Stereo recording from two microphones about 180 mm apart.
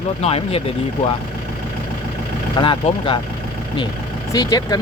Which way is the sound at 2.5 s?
25° left (ahead or behind).